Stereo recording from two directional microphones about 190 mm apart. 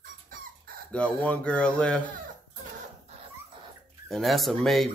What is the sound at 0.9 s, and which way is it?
Speech, 5° left (ahead or behind).